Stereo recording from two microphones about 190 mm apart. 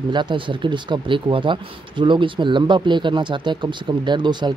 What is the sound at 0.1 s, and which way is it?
Speech, 25° right (ahead or behind).